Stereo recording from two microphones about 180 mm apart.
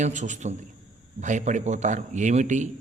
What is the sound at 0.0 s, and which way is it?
A man's voice, 45° right (ahead or behind).